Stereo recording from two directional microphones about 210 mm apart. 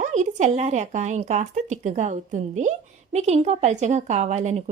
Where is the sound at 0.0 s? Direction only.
35° right (ahead or behind).